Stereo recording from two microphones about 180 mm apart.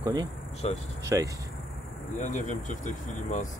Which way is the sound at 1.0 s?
20° right (ahead or behind).